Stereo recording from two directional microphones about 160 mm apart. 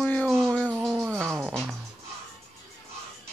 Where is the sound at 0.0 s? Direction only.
10° left (ahead or behind).